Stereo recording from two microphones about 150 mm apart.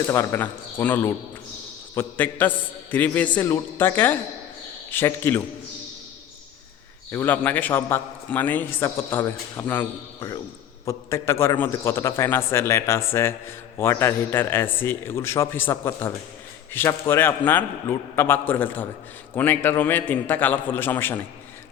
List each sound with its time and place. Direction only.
0.1 s a man's voice: 20° left (ahead or behind)
7.1 s a man's voice: 15° left (ahead or behind)